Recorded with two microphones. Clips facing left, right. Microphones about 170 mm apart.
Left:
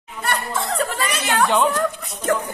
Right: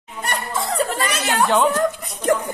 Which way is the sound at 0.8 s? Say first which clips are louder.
Right 1 dB; 40° right (ahead or behind).